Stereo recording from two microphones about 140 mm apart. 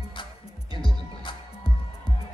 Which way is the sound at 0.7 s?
35° left (ahead or behind).